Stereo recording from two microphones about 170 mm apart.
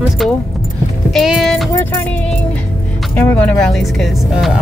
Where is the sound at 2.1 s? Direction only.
10° left (ahead or behind).